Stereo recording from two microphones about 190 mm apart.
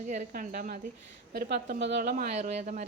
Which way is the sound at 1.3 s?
60° right (ahead or behind).